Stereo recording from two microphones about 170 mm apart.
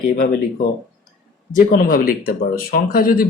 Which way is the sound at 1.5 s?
55° left (ahead or behind).